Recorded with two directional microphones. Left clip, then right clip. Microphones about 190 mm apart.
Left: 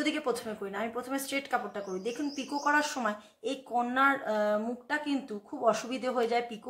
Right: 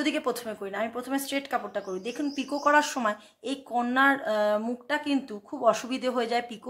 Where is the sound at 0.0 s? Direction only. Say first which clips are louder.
Right 3 dB; 35° right (ahead or behind).